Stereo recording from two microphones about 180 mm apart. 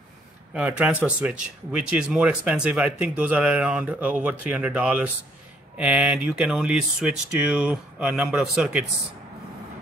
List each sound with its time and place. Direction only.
0.5 s speech: 5° right (ahead or behind)